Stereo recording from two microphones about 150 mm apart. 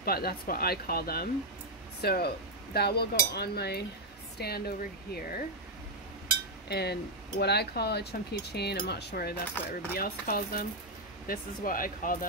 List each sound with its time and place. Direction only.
0.0 s speech: 90° left
6.7 s speech: 90° left
9.9 s speech: 80° left
11.2 s speech: 65° left (ahead or behind)